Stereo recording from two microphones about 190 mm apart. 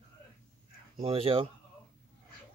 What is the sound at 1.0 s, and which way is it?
Speech, 30° right (ahead or behind).